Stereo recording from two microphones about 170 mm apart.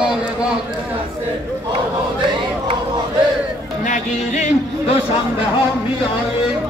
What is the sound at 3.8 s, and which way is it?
Speech, 45° left (ahead or behind).